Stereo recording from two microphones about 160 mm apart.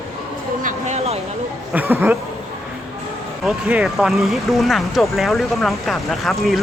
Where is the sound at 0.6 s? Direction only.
45° right (ahead or behind).